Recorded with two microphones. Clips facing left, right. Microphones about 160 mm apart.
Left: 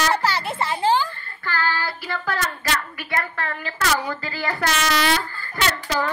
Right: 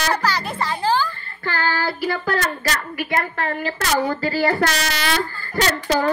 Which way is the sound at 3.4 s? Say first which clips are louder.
Right 3 dB; 35° right (ahead or behind).